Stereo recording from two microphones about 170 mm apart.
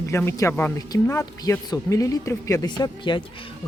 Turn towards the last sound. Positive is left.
turn(degrees=25)  # may be behind; listen again after turning